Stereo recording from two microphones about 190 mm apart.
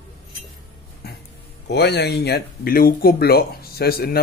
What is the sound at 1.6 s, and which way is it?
Speech, 60° left (ahead or behind).